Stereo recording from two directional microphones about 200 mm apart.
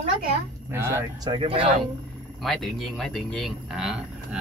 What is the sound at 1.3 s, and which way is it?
Speech, 25° right (ahead or behind).